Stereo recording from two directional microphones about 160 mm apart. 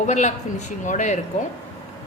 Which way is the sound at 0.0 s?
50° left (ahead or behind).